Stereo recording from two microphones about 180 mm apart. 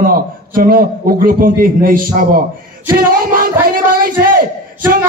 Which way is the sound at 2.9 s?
55° right (ahead or behind).